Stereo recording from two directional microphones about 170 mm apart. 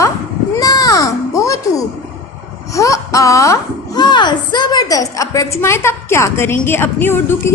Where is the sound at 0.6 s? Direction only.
20° left (ahead or behind).